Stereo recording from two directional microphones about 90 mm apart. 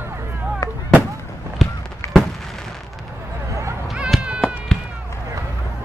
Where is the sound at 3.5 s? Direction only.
35° right (ahead or behind).